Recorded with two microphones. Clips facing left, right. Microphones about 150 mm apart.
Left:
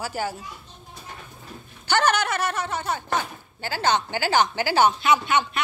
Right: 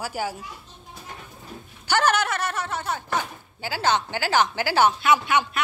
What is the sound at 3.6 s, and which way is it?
A woman's voice, 5° right (ahead or behind).